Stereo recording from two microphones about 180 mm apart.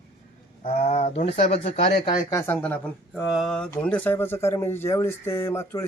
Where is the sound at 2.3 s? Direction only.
10° left (ahead or behind).